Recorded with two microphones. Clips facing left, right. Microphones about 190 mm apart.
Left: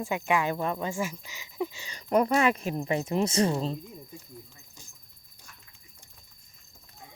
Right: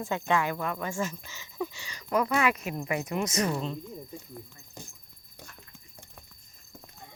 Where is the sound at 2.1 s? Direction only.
30° left (ahead or behind).